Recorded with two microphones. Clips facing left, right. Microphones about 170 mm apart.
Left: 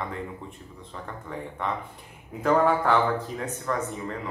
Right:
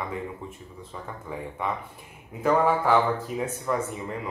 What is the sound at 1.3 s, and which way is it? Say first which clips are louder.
Speech: right 1 dB; 5° right (ahead or behind).